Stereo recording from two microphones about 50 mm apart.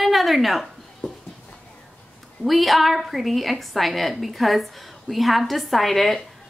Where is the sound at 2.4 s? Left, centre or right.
Centre.